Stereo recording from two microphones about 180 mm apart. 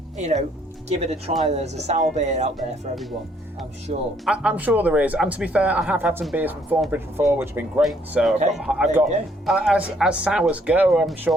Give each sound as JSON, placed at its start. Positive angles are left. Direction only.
{"t": 0.2, "sound": "speech", "side_deg": -40}
{"t": 3.9, "sound": "speech", "side_deg": -40}
{"t": 4.3, "sound": "speech", "side_deg": -5}
{"t": 7.8, "sound": "speech", "side_deg": 0}